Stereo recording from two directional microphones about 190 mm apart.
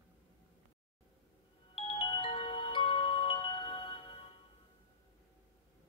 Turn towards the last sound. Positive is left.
turn(degrees=30)  # may be behind; listen again after turning